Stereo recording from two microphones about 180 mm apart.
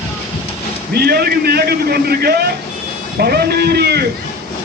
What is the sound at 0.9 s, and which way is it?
A man's voice, 60° right (ahead or behind).